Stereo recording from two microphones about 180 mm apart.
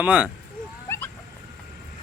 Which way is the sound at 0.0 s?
10° right (ahead or behind).